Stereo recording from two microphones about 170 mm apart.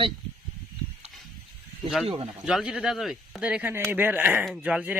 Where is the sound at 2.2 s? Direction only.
5° right (ahead or behind).